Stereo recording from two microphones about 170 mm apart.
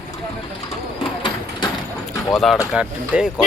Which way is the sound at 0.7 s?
30° left (ahead or behind).